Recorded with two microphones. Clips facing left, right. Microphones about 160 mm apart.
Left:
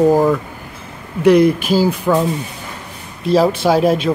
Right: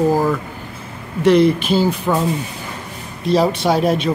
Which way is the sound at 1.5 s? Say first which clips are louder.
Left 1 dB; 10° left (ahead or behind).